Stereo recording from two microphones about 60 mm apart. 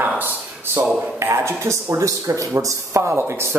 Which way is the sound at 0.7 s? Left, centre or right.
Right.